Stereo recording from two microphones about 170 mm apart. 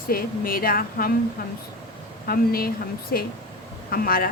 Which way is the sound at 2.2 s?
60° left (ahead or behind).